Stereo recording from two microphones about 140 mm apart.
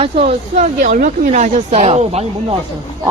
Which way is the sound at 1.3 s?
60° right (ahead or behind).